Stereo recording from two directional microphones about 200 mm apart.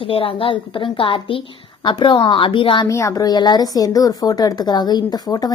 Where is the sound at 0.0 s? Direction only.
25° left (ahead or behind).